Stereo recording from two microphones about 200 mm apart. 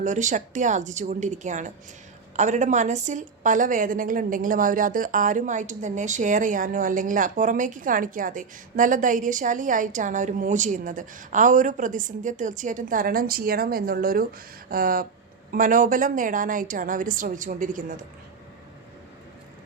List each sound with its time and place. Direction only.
0.0 s a woman's voice: 40° right (ahead or behind)